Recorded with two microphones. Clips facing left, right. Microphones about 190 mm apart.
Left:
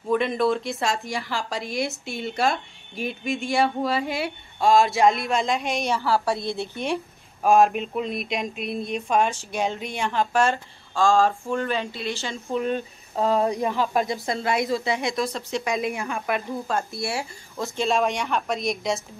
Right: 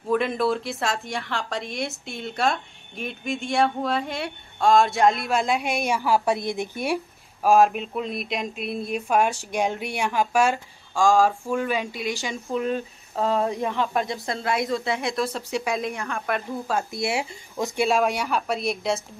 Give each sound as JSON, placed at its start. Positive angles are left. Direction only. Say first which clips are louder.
{"t": 0.1, "sound": "a woman's voice", "louder": "left 1 dB", "side_deg": 0}
{"t": 7.4, "sound": "speech", "louder": "even", "side_deg": 0}
{"t": 12.4, "sound": "a woman's voice", "louder": "left 2 dB", "side_deg": 0}
{"t": 15.9, "sound": "a woman's voice", "louder": "left 2 dB", "side_deg": 15}
{"t": 16.3, "sound": "a woman's voice", "louder": "even", "side_deg": 0}
{"t": 16.9, "sound": "speech", "louder": "right 3 dB", "side_deg": -20}
{"t": 17.8, "sound": "a woman's voice", "louder": "even", "side_deg": 0}